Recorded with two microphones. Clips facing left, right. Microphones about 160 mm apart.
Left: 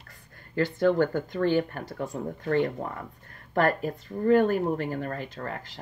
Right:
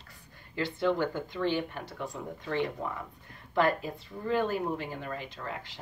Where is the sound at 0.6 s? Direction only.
45° left (ahead or behind).